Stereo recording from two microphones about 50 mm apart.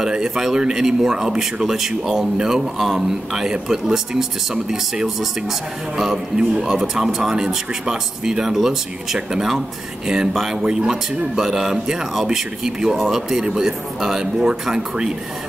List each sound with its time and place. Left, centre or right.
0.0 s speech: centre